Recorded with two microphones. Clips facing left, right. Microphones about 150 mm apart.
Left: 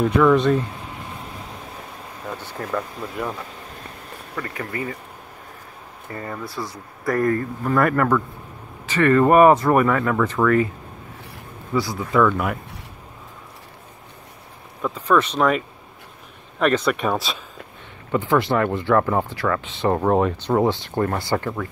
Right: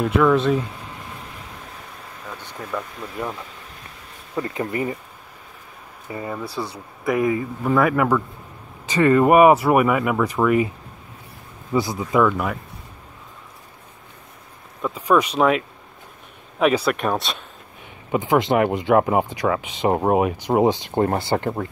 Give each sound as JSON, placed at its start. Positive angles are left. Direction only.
{"t": 0.0, "sound": "speech", "side_deg": 0}
{"t": 2.7, "sound": "speech", "side_deg": 0}
{"t": 4.4, "sound": "speech", "side_deg": -20}
{"t": 6.0, "sound": "speech", "side_deg": -10}
{"t": 6.5, "sound": "speech", "side_deg": -30}
{"t": 7.1, "sound": "speech", "side_deg": -5}
{"t": 11.7, "sound": "speech", "side_deg": -20}
{"t": 14.8, "sound": "speech", "side_deg": -10}
{"t": 18.1, "sound": "speech", "side_deg": -15}
{"t": 21.3, "sound": "speech", "side_deg": -35}